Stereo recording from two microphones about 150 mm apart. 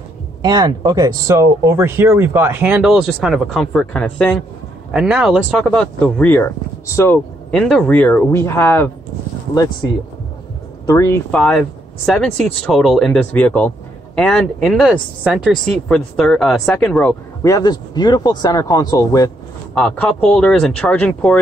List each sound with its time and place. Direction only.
0.4 s speech: 30° right (ahead or behind); by 4.4 s 5° left (ahead or behind)
4.9 s speech: 5° right (ahead or behind); by 7.2 s 15° left (ahead or behind)
7.5 s speech: 5° left (ahead or behind)
10.9 s speech: 20° left (ahead or behind)
11.3 s speech: 5° left (ahead or behind)
17.4 s speech: 25° left (ahead or behind)
19.7 s speech: 5° left (ahead or behind)